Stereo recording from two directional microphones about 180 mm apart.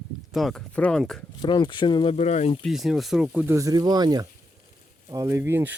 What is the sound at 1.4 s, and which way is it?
Speech, 25° left (ahead or behind).